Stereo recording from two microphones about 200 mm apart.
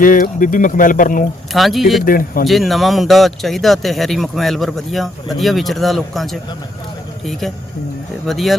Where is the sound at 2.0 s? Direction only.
45° left (ahead or behind).